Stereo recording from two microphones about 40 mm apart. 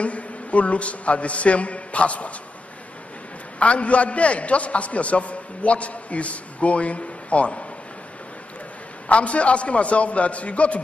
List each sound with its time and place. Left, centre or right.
0.0 s a man's voice: left
3.5 s a man's voice: left
9.1 s a man's voice: left